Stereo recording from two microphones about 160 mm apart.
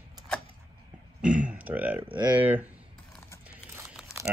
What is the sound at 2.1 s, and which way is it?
Speech, 25° right (ahead or behind).